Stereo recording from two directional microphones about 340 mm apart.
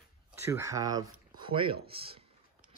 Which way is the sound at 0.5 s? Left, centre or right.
Centre.